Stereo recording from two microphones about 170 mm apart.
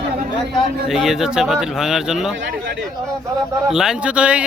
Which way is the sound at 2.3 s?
90° right.